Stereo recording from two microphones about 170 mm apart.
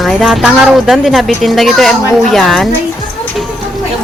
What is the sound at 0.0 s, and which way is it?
Speech, centre (ahead or behind).